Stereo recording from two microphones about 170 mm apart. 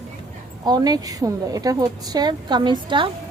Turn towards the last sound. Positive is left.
turn(degrees=-30)  # may be behind; listen again after turning